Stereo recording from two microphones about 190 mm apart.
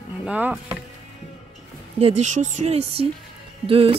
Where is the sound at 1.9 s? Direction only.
35° right (ahead or behind).